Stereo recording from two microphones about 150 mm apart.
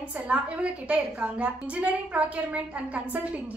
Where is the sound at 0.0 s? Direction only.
10° right (ahead or behind).